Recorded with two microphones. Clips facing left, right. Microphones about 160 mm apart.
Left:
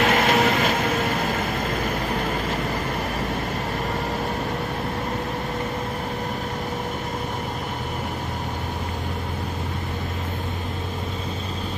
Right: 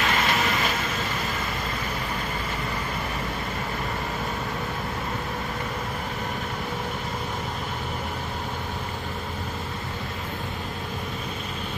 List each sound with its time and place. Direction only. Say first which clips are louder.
0.0 s vehicle: left 6 dB; 55° left (ahead or behind)